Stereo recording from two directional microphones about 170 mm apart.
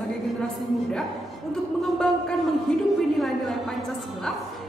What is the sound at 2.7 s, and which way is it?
A woman's voice, 5° left (ahead or behind).